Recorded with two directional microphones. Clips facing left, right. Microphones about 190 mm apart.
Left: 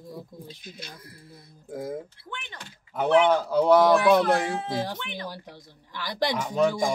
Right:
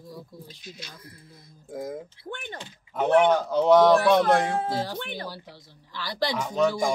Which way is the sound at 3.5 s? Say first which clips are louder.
Right 1 dB; 10° left (ahead or behind).